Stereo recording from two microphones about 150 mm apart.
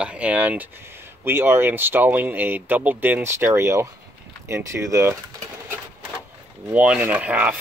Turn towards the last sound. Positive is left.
turn(degrees=-10)  # may be behind; listen again after turning